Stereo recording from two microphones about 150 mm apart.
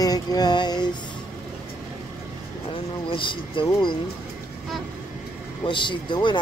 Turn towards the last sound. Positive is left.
turn(degrees=30)  # may be behind; listen again after turning